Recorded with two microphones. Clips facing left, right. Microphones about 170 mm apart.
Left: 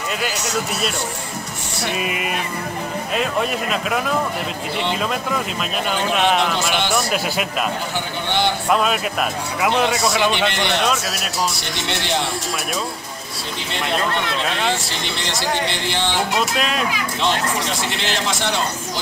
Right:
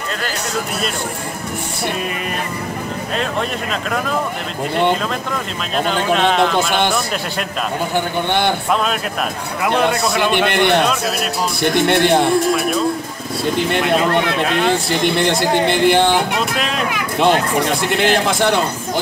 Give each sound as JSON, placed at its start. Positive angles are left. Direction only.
{"t": 2.0, "sound": "speech", "side_deg": 5}
{"t": 5.9, "sound": "speech", "side_deg": 5}
{"t": 7.9, "sound": "a man's voice", "side_deg": -55}
{"t": 9.7, "sound": "speech", "side_deg": -55}
{"t": 13.6, "sound": "speech", "side_deg": -55}
{"t": 16.3, "sound": "speech", "side_deg": 0}
{"t": 16.9, "sound": "speech", "side_deg": -55}